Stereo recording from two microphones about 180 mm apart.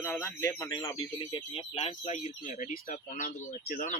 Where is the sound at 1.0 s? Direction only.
30° left (ahead or behind).